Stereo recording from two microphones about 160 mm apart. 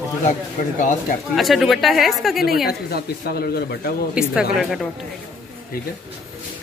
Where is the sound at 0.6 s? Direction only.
55° left (ahead or behind).